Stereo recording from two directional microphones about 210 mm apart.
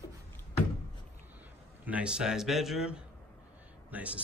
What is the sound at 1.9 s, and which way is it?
A man's voice, 5° right (ahead or behind).